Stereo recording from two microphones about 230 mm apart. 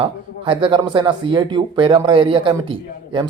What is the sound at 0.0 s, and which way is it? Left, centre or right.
Speech, right.